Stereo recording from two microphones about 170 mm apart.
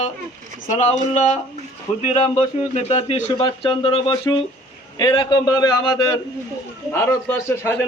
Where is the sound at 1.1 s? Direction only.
45° left (ahead or behind).